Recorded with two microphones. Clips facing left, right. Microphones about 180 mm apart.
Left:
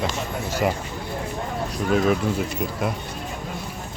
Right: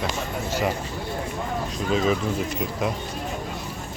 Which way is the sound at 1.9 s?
60° left (ahead or behind).